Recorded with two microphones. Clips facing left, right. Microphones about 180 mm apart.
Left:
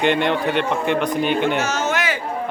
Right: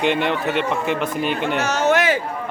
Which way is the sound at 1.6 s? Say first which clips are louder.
Right 4 dB; 65° right (ahead or behind).